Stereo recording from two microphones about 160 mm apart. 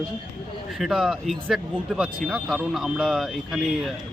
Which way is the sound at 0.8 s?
5° right (ahead or behind).